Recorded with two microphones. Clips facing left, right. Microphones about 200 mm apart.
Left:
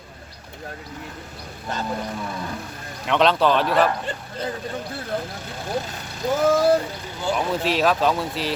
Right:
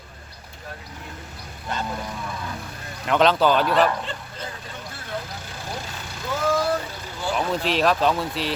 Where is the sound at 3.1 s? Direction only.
Centre (ahead or behind).